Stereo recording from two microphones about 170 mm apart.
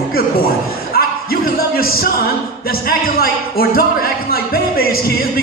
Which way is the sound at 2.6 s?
60° left (ahead or behind).